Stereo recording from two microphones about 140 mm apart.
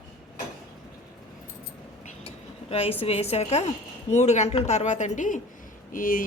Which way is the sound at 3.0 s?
45° left (ahead or behind).